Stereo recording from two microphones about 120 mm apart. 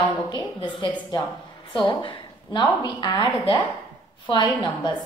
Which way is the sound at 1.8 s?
45° left (ahead or behind).